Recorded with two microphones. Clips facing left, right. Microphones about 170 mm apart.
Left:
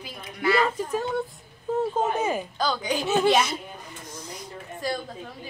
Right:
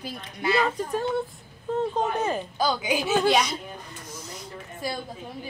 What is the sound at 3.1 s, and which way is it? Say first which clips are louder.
Speech: left 1 dB; 5° left (ahead or behind).